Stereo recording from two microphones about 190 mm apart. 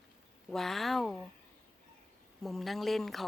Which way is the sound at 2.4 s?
Centre (ahead or behind).